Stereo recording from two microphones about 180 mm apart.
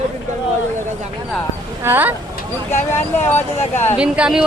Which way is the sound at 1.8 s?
10° right (ahead or behind).